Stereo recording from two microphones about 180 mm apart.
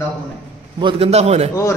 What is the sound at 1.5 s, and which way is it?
Speech, 15° left (ahead or behind).